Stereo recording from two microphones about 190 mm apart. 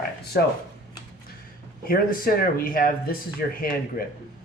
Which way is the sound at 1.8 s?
50° left (ahead or behind).